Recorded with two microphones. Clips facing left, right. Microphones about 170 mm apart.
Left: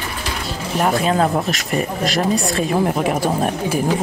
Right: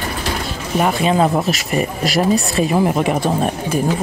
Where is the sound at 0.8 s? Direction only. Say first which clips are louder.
Right 2 dB; 5° right (ahead or behind).